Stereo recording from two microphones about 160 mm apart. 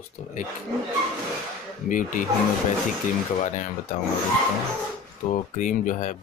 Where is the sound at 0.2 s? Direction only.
50° left (ahead or behind).